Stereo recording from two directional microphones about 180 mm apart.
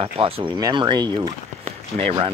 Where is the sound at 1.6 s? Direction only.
35° right (ahead or behind).